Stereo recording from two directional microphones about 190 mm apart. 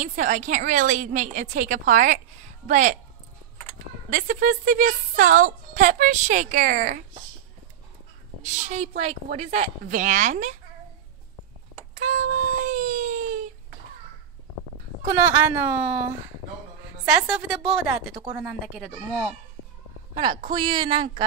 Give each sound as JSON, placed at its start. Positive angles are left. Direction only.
{"t": 0.0, "sound": "a woman's voice", "side_deg": -40}
{"t": 4.1, "sound": "a woman's voice", "side_deg": -45}
{"t": 8.4, "sound": "a woman's voice", "side_deg": -40}
{"t": 12.1, "sound": "a sound", "side_deg": -40}
{"t": 15.0, "sound": "speech", "side_deg": -10}
{"t": 17.1, "sound": "a woman's voice", "side_deg": 0}
{"t": 20.5, "sound": "speech", "side_deg": -25}